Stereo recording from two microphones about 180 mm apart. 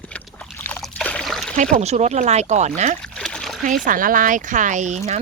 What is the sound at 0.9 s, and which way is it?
Trickle, 5° left (ahead or behind).